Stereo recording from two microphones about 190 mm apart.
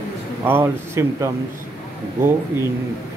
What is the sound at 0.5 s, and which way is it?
Speech, 10° right (ahead or behind).